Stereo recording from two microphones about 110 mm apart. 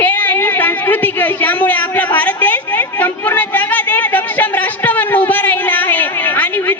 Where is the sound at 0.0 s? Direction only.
15° left (ahead or behind).